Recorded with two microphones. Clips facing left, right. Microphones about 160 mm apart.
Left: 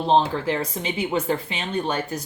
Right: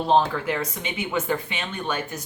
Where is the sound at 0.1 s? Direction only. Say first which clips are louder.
Left 1 dB; 30° left (ahead or behind).